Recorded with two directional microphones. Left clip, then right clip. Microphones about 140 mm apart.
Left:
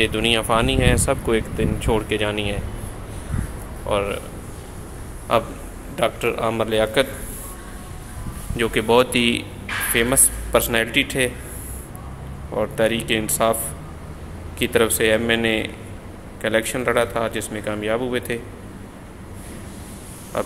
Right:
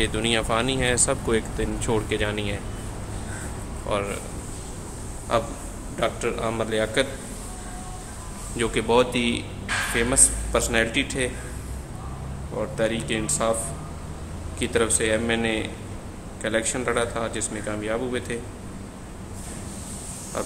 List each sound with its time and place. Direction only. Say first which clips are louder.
0.0 s speech: left 5 dB; 15° left (ahead or behind)
3.9 s speech: left 5 dB; 20° left (ahead or behind)
5.3 s speech: left 4 dB; 25° left (ahead or behind)
8.5 s speech: left 4 dB; 15° left (ahead or behind); by 11.2 s 30° left (ahead or behind)
12.5 s speech: left 5 dB; 30° left (ahead or behind)
14.6 s speech: left 5 dB; 25° left (ahead or behind)
20.3 s frog: left 5 dB; 20° left (ahead or behind)